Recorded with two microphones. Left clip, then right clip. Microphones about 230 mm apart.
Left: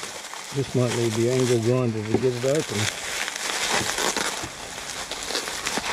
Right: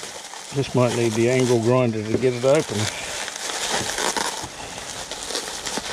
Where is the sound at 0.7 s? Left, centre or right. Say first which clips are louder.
Right 4 dB; centre.